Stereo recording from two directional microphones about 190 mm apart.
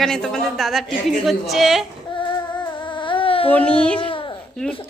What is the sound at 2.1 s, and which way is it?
Child singing, 25° left (ahead or behind).